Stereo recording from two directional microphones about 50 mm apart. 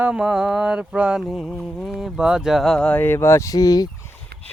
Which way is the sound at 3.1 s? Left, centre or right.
Left.